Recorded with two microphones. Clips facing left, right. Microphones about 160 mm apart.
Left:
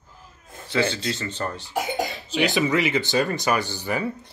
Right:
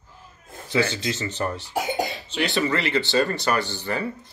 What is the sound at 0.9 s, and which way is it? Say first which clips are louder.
Speech: right 1 dB; 15° right (ahead or behind).